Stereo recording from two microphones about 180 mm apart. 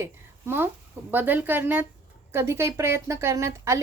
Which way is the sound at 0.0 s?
15° right (ahead or behind).